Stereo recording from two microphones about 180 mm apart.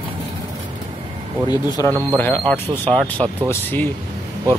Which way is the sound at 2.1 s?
10° left (ahead or behind).